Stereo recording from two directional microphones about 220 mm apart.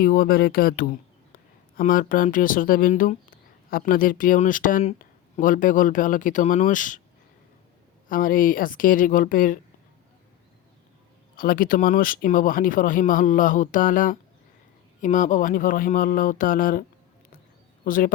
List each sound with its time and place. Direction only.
0.0 s speech: 45° left (ahead or behind)
8.1 s speech: 40° left (ahead or behind)
11.3 s speech: 40° left (ahead or behind)
17.8 s speech: 40° left (ahead or behind)